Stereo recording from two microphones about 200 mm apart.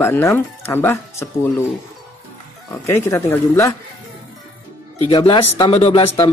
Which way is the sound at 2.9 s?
10° left (ahead or behind).